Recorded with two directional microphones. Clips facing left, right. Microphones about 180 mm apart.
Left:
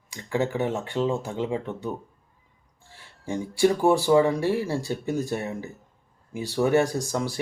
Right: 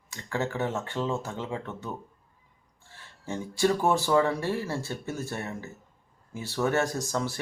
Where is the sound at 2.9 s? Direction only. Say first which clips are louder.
Left 4 dB; 15° left (ahead or behind).